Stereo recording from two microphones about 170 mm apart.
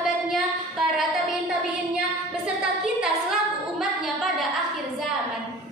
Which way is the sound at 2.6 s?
5° right (ahead or behind).